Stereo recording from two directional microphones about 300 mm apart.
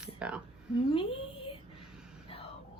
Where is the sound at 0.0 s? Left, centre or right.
Centre.